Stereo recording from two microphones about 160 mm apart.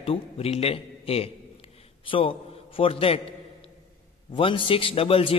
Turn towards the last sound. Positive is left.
turn(degrees=35)  # may be behind; listen again after turning